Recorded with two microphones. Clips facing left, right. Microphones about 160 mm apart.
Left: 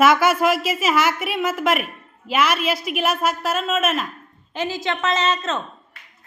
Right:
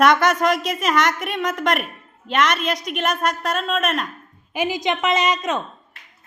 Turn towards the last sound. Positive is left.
turn(degrees=-15)  # may be behind; listen again after turning